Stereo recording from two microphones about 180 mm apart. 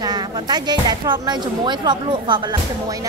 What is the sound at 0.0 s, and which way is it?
Speech, 20° right (ahead or behind).